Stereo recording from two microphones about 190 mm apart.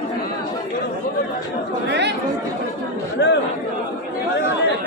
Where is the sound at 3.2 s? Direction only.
65° left (ahead or behind).